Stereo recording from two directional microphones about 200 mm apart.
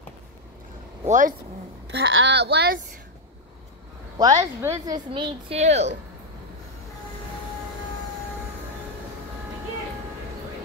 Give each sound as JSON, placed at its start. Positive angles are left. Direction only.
{"t": 1.0, "sound": "speech", "side_deg": -40}
{"t": 1.9, "sound": "speech", "side_deg": -65}
{"t": 4.2, "sound": "speech", "side_deg": -20}